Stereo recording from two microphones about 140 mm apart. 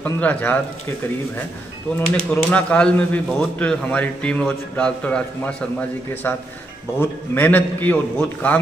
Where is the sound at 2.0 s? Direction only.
10° left (ahead or behind).